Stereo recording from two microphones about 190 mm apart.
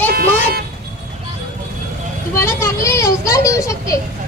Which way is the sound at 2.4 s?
15° left (ahead or behind).